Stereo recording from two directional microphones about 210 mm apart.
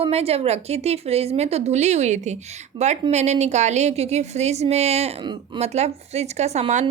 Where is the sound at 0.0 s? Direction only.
30° right (ahead or behind).